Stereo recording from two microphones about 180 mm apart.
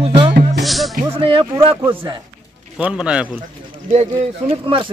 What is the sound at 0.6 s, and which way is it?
Music, centre (ahead or behind).